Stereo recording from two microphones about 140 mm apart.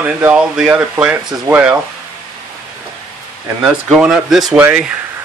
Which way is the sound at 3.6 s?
10° right (ahead or behind).